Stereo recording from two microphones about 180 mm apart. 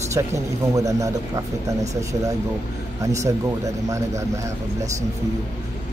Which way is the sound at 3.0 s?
15° right (ahead or behind).